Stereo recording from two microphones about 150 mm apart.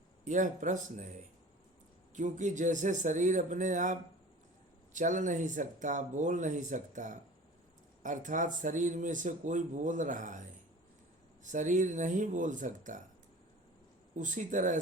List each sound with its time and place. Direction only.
0.3 s speech: 55° right (ahead or behind)
2.1 s speech: 55° right (ahead or behind)
4.9 s speech: 55° right (ahead or behind)
11.5 s speech: 55° right (ahead or behind)
14.2 s speech: 55° right (ahead or behind)